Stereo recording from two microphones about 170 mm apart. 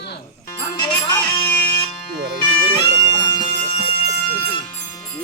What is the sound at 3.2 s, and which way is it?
Music, 25° left (ahead or behind).